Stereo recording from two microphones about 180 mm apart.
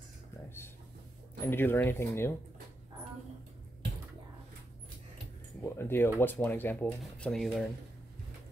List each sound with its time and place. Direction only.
1.4 s speech: 10° left (ahead or behind)
5.6 s speech: 10° left (ahead or behind)